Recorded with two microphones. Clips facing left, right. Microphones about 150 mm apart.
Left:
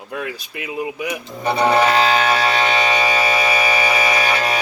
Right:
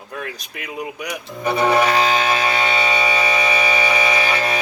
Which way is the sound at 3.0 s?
35° left (ahead or behind).